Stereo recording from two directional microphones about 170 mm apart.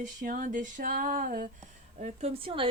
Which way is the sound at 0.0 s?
50° right (ahead or behind).